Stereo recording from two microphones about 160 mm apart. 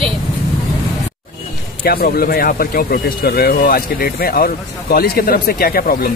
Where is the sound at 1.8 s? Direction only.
70° left (ahead or behind).